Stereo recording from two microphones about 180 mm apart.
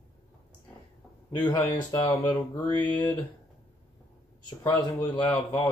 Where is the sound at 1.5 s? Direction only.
25° left (ahead or behind).